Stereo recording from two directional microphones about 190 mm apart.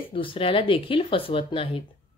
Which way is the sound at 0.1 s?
30° left (ahead or behind).